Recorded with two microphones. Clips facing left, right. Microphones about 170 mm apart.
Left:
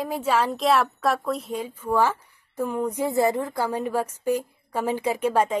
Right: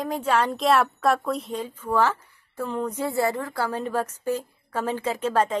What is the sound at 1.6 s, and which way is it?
A woman's voice, 10° left (ahead or behind).